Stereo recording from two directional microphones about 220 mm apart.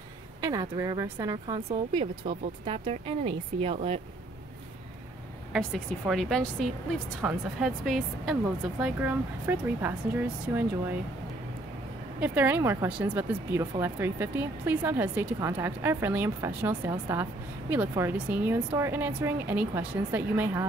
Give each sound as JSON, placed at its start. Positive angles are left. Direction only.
{"t": 0.4, "sound": "speech", "side_deg": -15}
{"t": 5.5, "sound": "a woman's voice", "side_deg": 0}
{"t": 12.2, "sound": "speech", "side_deg": -5}